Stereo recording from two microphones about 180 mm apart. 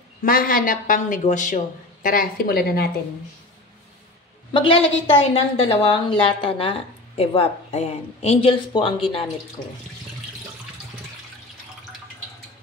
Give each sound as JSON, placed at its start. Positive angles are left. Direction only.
{"t": 0.2, "sound": "a woman's voice", "side_deg": 50}
{"t": 2.0, "sound": "a woman's voice", "side_deg": 55}
{"t": 4.6, "sound": "a woman's voice", "side_deg": 30}